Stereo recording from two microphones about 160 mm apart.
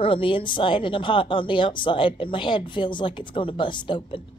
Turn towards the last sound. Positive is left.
turn(degrees=30)  # may be behind; listen again after turning